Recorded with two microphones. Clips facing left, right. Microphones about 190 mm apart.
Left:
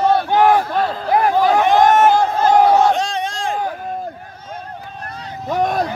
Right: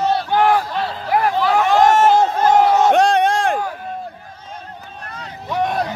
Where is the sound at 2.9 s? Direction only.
65° right (ahead or behind).